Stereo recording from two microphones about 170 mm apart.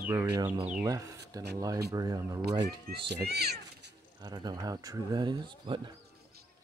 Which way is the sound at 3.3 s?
70° right (ahead or behind).